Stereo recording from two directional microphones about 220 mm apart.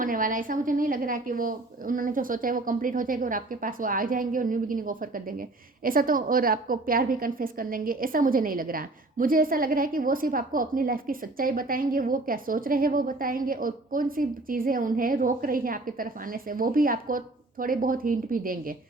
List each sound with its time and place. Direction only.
0.0 s speech: 40° right (ahead or behind)